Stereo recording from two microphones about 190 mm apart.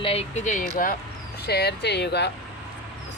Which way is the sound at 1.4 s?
60° left (ahead or behind).